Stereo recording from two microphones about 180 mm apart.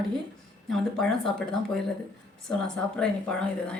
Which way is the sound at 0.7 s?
Centre (ahead or behind).